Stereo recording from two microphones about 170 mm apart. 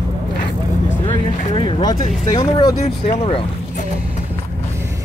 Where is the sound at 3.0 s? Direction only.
35° left (ahead or behind).